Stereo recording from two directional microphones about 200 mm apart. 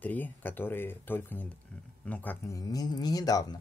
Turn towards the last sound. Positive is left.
turn(degrees=20)  # may be behind; listen again after turning